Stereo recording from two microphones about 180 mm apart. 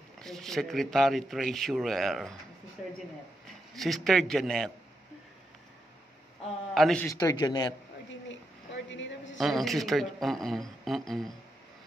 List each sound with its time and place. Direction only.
0.2 s speech: centre (ahead or behind)
3.7 s speech: centre (ahead or behind)
6.7 s speech: 5° left (ahead or behind)
7.1 s speech: 20° left (ahead or behind)
8.1 s a sound: 90° left
9.4 s speech: centre (ahead or behind)